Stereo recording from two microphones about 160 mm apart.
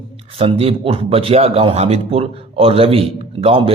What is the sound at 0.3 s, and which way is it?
A man's voice, 35° right (ahead or behind).